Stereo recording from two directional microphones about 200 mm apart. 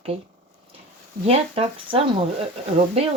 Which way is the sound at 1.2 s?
30° right (ahead or behind).